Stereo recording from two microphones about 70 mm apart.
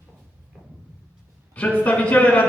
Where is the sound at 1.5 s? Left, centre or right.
Centre.